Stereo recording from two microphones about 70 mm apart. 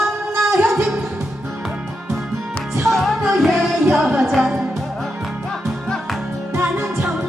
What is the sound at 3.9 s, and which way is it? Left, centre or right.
Music, centre.